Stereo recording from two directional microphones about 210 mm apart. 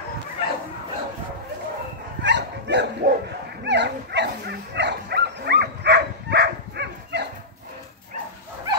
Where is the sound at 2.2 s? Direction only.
55° right (ahead or behind).